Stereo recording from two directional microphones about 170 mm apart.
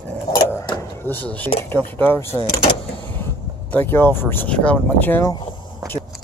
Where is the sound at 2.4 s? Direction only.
30° left (ahead or behind).